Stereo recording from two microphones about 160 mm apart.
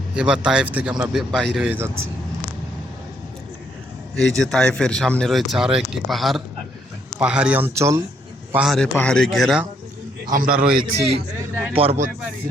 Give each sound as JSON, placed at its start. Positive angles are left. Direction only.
{"t": 0.2, "sound": "speech", "side_deg": -5}
{"t": 1.6, "sound": "speech", "side_deg": -10}
{"t": 4.2, "sound": "speech", "side_deg": 0}
{"t": 8.5, "sound": "speech", "side_deg": 0}
{"t": 10.2, "sound": "a man's voice", "side_deg": -60}
{"t": 10.9, "sound": "a man's voice", "side_deg": -40}